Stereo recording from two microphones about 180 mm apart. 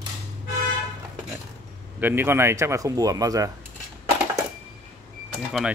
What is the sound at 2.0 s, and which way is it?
Speech, 10° right (ahead or behind).